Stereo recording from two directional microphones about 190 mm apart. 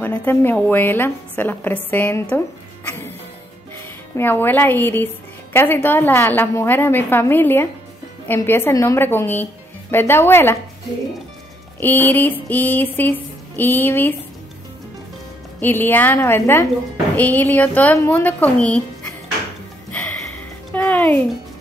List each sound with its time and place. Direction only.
0.0 s a woman's voice: 10° left (ahead or behind)
4.2 s a woman's voice: 10° left (ahead or behind)
11.8 s a woman's voice: 10° left (ahead or behind)
15.6 s a woman's voice: 10° left (ahead or behind)
20.7 s music: 10° left (ahead or behind)